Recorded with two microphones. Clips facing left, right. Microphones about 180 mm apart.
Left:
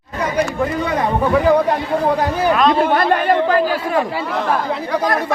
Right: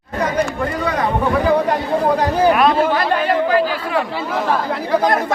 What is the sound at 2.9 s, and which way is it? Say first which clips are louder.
Speech: left 2 dB; 50° left (ahead or behind).